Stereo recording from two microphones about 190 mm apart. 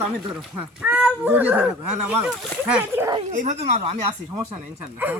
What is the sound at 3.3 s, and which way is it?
Speech, 40° right (ahead or behind).